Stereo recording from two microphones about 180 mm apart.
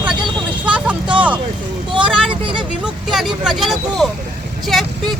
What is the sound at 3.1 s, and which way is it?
Vehicle, centre (ahead or behind).